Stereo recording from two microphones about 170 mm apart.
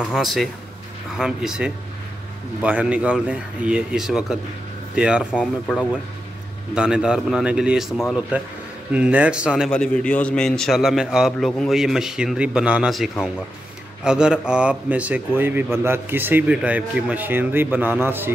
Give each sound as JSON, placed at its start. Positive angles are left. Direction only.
{"t": 0.0, "sound": "a man's voice", "side_deg": 0}
{"t": 6.7, "sound": "a man's voice", "side_deg": -5}
{"t": 9.7, "sound": "a man's voice", "side_deg": 5}